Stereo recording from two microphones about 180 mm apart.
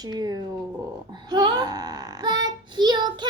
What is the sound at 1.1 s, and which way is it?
Child singing, 25° right (ahead or behind).